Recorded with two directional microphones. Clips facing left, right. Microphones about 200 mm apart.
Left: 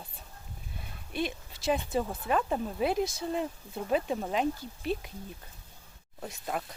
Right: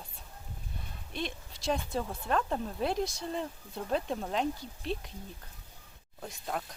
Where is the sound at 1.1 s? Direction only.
5° left (ahead or behind).